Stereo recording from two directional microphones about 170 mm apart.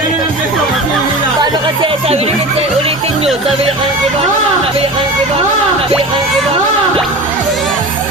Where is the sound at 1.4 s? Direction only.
25° right (ahead or behind).